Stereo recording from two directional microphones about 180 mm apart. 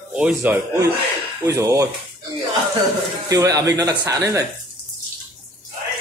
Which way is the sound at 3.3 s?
20° right (ahead or behind).